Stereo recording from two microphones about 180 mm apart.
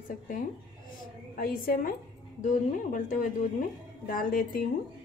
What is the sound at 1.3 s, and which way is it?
A woman's voice, 55° left (ahead or behind).